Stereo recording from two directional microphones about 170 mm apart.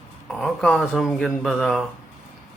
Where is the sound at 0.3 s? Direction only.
5° left (ahead or behind).